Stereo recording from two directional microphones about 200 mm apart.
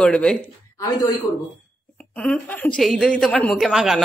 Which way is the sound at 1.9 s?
5° left (ahead or behind).